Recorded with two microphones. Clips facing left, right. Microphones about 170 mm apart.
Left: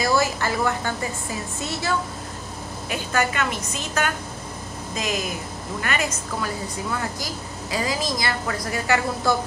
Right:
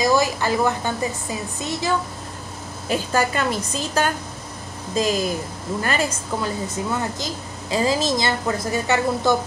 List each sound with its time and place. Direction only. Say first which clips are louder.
0.0 s a woman's voice: right 3 dB; 15° right (ahead or behind)
1.6 s a woman's voice: right 3 dB; 15° right (ahead or behind)
2.9 s a woman's voice: right 3 dB; 35° right (ahead or behind)